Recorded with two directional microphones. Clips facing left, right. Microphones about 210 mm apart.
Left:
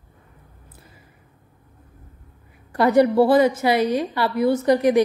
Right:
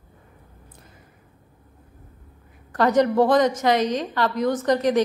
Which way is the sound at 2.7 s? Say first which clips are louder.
Left 3 dB; 10° left (ahead or behind).